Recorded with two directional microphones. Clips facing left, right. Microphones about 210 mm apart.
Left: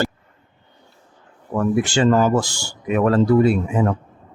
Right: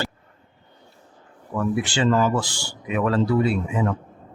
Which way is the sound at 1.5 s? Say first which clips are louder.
Left 5 dB; 45° left (ahead or behind).